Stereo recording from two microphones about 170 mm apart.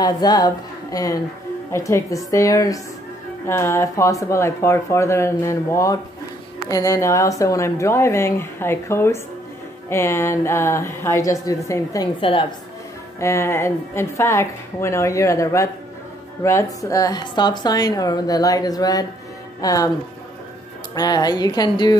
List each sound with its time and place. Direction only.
0.0 s a woman's voice: 25° left (ahead or behind)
12.2 s a woman's voice: 30° left (ahead or behind)
13.2 s a woman's voice: 15° left (ahead or behind)
20.9 s a woman's voice: 20° left (ahead or behind)